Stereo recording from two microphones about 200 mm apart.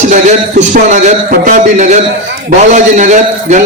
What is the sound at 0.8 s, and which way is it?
A man's voice, 35° right (ahead or behind).